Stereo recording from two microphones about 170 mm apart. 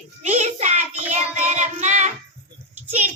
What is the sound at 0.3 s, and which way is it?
Child singing, 45° right (ahead or behind).